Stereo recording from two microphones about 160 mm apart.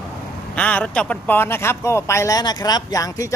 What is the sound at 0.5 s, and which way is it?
Speech, 10° left (ahead or behind).